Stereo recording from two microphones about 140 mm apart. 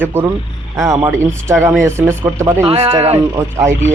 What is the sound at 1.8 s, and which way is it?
Speech, 20° right (ahead or behind).